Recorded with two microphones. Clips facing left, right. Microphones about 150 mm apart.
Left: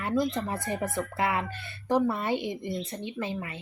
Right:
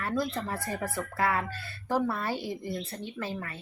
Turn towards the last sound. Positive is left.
turn(degrees=15)  # may be behind; listen again after turning